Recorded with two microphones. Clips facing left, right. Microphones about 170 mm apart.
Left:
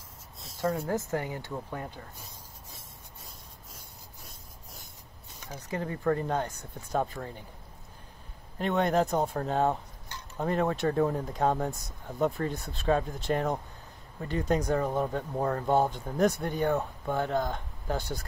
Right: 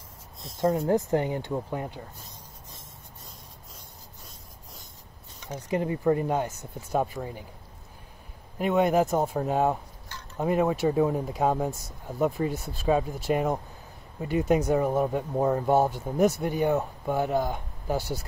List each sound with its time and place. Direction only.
0.6 s speech: 25° right (ahead or behind)
5.5 s speech: 15° right (ahead or behind)
8.5 s speech: 10° right (ahead or behind)